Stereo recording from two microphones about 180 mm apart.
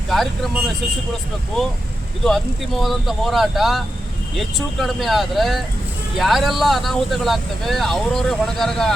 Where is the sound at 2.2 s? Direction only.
Centre (ahead or behind).